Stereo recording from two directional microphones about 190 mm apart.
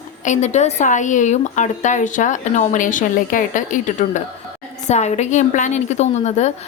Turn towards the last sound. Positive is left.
turn(degrees=35)  # may be behind; listen again after turning